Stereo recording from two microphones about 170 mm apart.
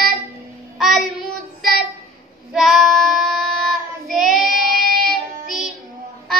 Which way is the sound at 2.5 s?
Centre (ahead or behind).